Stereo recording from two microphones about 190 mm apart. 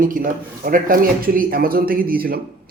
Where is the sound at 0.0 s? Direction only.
45° right (ahead or behind).